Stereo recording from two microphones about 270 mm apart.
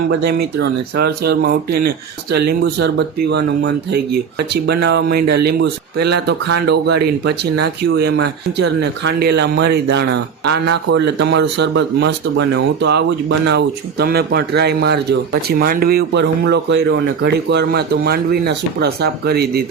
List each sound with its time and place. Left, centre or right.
0.3 s speech: right